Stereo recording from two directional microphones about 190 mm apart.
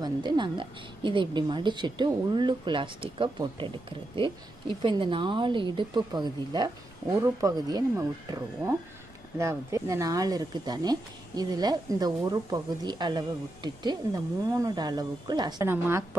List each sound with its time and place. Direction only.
0.0 s speech: 25° right (ahead or behind)